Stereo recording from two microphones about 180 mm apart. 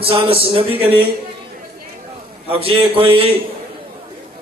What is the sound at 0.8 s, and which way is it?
Speech, 30° right (ahead or behind).